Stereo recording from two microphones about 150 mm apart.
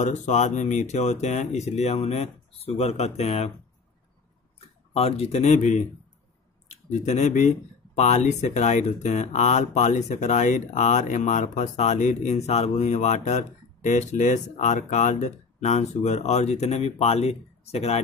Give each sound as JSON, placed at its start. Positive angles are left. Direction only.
{"t": 0.0, "sound": "speech", "side_deg": 50}
{"t": 4.6, "sound": "speech", "side_deg": 40}